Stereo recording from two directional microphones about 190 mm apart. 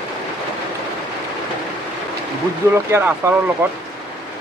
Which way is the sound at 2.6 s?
10° right (ahead or behind).